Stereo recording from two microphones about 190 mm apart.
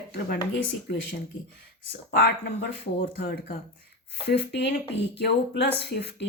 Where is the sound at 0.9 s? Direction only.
60° left (ahead or behind).